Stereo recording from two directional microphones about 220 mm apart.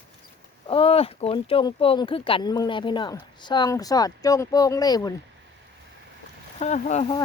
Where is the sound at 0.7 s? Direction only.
25° left (ahead or behind).